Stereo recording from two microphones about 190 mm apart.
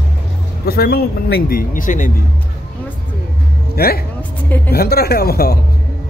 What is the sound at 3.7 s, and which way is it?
A man's voice, 55° left (ahead or behind).